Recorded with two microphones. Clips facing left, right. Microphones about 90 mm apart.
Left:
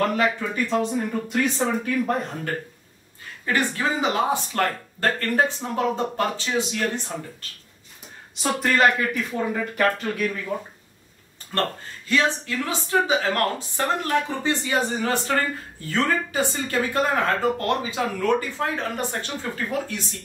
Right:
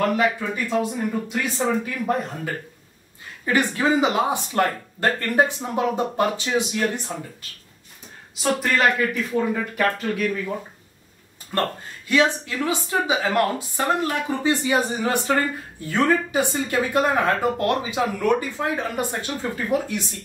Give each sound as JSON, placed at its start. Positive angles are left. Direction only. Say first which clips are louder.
{"t": 0.0, "sound": "speech", "louder": "right 1 dB", "side_deg": -5}
{"t": 8.4, "sound": "speech", "louder": "even", "side_deg": 0}
{"t": 12.1, "sound": "speech", "louder": "right 2 dB", "side_deg": -15}